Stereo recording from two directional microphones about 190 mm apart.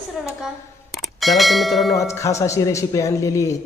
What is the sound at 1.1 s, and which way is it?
Speech, centre (ahead or behind).